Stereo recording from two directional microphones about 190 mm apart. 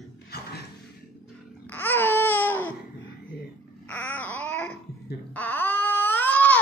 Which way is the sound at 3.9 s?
10° left (ahead or behind).